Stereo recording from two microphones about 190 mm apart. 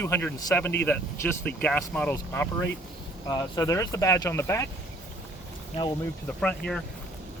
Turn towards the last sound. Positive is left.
turn(degrees=5)  # may be behind; listen again after turning